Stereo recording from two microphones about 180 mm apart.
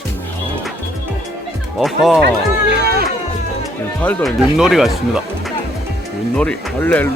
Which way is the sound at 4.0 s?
10° left (ahead or behind).